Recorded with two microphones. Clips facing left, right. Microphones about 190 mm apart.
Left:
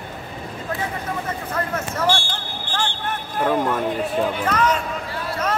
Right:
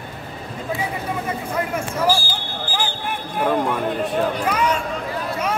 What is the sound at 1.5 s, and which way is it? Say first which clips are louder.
Basketball bounce: right 1 dB; 10° right (ahead or behind).